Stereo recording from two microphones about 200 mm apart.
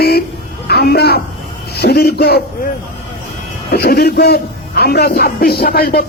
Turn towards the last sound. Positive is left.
turn(degrees=50)  # may be behind; listen again after turning